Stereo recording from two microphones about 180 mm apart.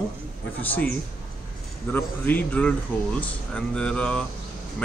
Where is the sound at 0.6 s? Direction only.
10° left (ahead or behind).